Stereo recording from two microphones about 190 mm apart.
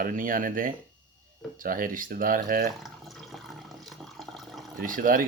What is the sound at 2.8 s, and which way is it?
Water, centre (ahead or behind).